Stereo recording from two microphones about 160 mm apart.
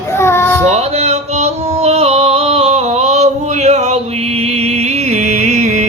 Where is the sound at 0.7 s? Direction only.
45° right (ahead or behind).